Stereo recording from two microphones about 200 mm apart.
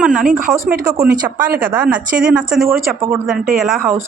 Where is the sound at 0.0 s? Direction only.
5° right (ahead or behind).